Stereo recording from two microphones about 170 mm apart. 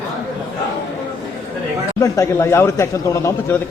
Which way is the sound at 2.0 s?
15° left (ahead or behind).